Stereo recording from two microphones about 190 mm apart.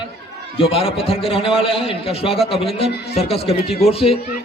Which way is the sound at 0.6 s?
30° left (ahead or behind).